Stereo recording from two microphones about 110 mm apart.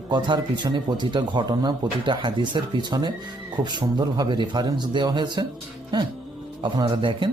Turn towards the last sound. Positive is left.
turn(degrees=-50)  # may be behind; listen again after turning